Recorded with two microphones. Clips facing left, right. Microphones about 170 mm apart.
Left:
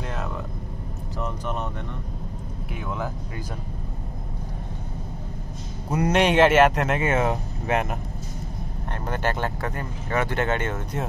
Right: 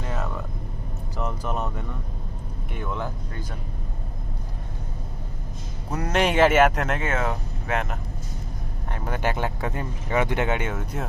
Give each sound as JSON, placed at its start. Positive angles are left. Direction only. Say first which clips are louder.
{"t": 0.0, "sound": "a sound", "louder": "even", "side_deg": 0}
{"t": 1.1, "sound": "vehicle", "louder": "right 1 dB", "side_deg": -5}
{"t": 2.7, "sound": "speech", "louder": "even", "side_deg": 5}
{"t": 5.9, "sound": "speech", "louder": "left 3 dB", "side_deg": 5}
{"t": 7.0, "sound": "speech", "louder": "left 4 dB", "side_deg": 20}
{"t": 9.0, "sound": "speech", "louder": "even", "side_deg": -10}